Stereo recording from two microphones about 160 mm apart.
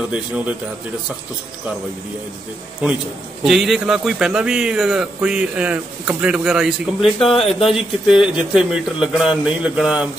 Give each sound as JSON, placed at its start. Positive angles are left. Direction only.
{"t": 0.1, "sound": "speech", "side_deg": -5}
{"t": 3.4, "sound": "a man's voice", "side_deg": 0}
{"t": 7.3, "sound": "speech", "side_deg": 35}
{"t": 7.6, "sound": "a man's voice", "side_deg": -5}